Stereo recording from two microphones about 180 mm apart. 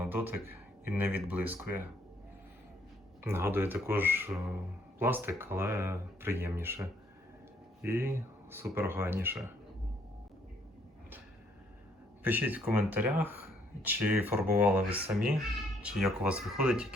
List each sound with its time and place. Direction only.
0.0 s speech: 10° right (ahead or behind)
3.2 s speech: 15° right (ahead or behind)
12.2 s speech: 10° right (ahead or behind)
14.8 s speech: 30° right (ahead or behind)
15.8 s speech: 5° right (ahead or behind)